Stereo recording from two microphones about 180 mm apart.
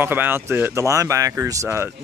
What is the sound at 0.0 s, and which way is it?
Speech, 10° right (ahead or behind).